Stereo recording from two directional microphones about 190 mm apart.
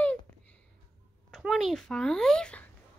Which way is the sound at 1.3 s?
Centre (ahead or behind).